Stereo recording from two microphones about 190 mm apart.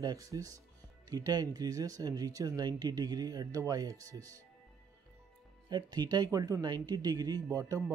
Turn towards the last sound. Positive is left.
turn(degrees=-15)  # may be behind; listen again after turning